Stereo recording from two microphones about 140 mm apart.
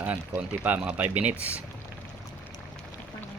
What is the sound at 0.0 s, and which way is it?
Speech, 10° right (ahead or behind).